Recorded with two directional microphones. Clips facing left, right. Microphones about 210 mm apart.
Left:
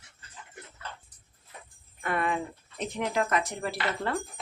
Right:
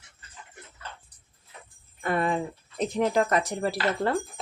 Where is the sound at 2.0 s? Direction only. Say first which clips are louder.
Right 3 dB; 35° right (ahead or behind).